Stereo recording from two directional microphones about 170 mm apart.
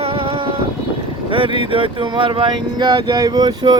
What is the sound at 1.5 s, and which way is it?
Speech, 30° right (ahead or behind).